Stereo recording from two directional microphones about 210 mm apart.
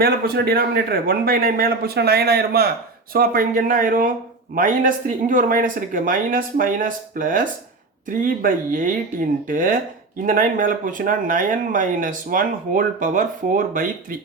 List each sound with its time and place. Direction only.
0.0 s a man's voice: 45° right (ahead or behind)